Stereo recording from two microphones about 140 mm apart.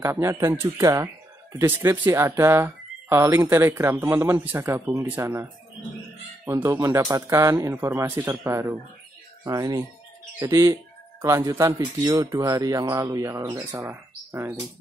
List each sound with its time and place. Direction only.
0.0 s a man's voice: 20° right (ahead or behind)